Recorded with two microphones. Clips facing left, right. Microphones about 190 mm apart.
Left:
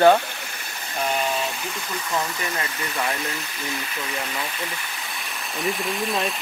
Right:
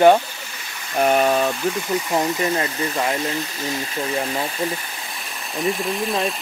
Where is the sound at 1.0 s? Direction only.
55° right (ahead or behind).